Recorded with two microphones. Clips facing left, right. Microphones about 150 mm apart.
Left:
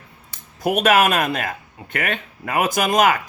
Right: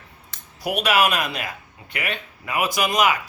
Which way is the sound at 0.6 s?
50° left (ahead or behind).